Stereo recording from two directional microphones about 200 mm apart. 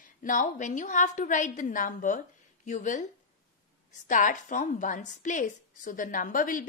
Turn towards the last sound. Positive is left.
turn(degrees=40)  # may be behind; listen again after turning